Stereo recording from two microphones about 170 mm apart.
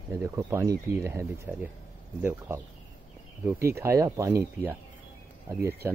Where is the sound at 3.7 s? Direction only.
15° right (ahead or behind).